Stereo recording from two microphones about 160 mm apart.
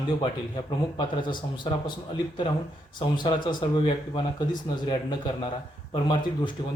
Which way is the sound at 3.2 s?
30° left (ahead or behind).